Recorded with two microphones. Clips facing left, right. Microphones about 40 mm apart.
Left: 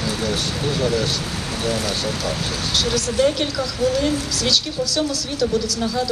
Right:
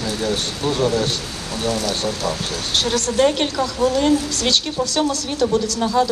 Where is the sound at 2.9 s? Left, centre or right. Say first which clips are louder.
Right 2 dB; right.